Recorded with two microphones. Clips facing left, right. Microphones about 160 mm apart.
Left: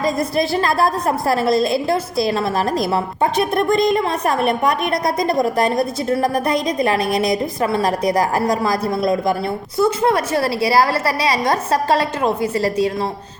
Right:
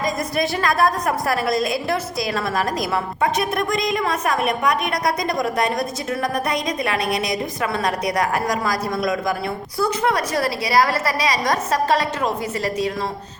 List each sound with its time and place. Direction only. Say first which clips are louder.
0.0 s a woman's voice: left 4 dB; 30° left (ahead or behind)